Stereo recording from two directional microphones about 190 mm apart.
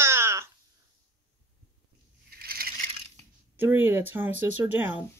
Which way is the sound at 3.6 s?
10° right (ahead or behind).